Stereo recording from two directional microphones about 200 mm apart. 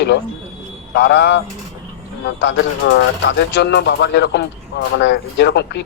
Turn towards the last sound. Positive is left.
turn(degrees=60)  # may be behind; listen again after turning